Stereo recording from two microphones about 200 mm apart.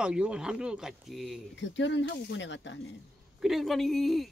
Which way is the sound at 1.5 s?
65° left (ahead or behind).